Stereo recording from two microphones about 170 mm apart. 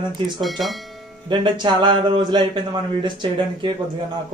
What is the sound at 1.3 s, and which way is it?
A man's voice, 25° right (ahead or behind).